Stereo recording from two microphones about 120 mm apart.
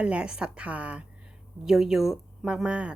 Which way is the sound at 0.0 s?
10° right (ahead or behind).